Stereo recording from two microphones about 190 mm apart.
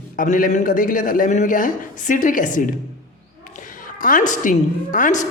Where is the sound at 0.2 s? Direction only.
45° left (ahead or behind).